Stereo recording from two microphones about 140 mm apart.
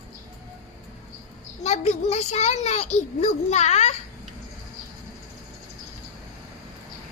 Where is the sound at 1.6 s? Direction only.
55° left (ahead or behind).